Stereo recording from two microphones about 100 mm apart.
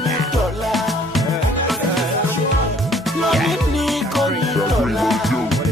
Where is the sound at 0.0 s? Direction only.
Centre (ahead or behind).